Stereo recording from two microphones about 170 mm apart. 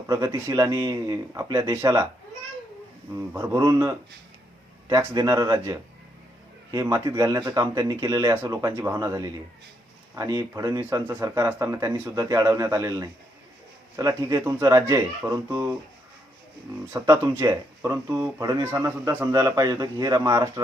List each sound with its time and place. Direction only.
0.1 s speech: 20° right (ahead or behind)
3.4 s speech: 20° right (ahead or behind)
16.9 s speech: 15° right (ahead or behind)